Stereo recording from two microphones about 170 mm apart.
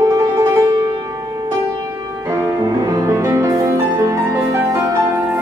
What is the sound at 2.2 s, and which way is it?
Music, 15° right (ahead or behind).